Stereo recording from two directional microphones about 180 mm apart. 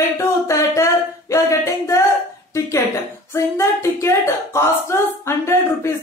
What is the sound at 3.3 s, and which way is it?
Speech, 15° left (ahead or behind).